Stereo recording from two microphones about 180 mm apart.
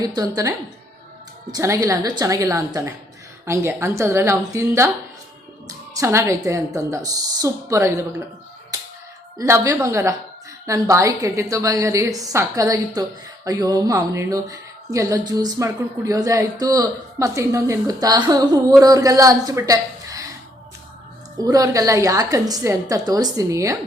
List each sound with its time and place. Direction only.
0.0 s speech: 20° right (ahead or behind)
1.5 s a woman's voice: 15° right (ahead or behind)
5.9 s a woman's voice: 15° right (ahead or behind)
9.4 s a woman's voice: 15° right (ahead or behind)
21.3 s speech: 20° right (ahead or behind)